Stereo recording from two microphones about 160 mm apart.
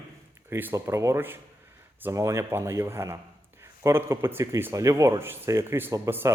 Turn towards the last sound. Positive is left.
turn(degrees=-15)  # may be behind; listen again after turning